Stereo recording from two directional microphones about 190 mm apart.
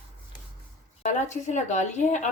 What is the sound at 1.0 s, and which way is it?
A woman's voice, 40° left (ahead or behind).